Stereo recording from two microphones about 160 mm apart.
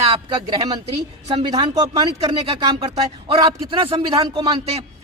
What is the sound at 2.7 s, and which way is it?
A man's voice, 35° right (ahead or behind).